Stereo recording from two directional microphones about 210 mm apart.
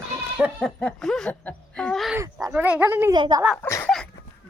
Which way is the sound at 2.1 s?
15° right (ahead or behind).